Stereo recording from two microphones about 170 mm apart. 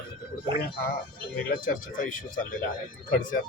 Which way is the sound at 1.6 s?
50° left (ahead or behind).